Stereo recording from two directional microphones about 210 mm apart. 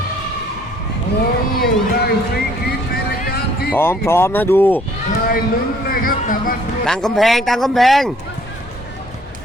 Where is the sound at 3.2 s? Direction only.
50° left (ahead or behind).